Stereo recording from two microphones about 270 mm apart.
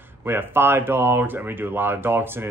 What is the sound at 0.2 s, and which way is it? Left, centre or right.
Speech, centre.